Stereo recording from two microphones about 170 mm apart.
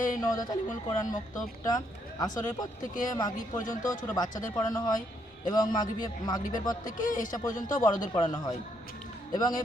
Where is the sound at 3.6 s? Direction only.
50° left (ahead or behind).